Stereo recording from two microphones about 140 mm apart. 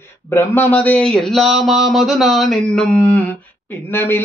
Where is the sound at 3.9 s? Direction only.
15° left (ahead or behind).